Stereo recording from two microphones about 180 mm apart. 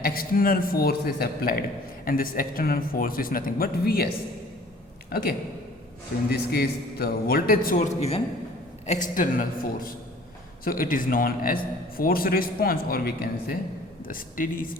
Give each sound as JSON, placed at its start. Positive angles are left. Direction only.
{"t": 0.0, "sound": "a man's voice", "side_deg": 55}
{"t": 5.1, "sound": "a man's voice", "side_deg": 60}
{"t": 6.5, "sound": "a man's voice", "side_deg": 60}
{"t": 7.8, "sound": "a woman's voice", "side_deg": 35}
{"t": 8.9, "sound": "a man's voice", "side_deg": 45}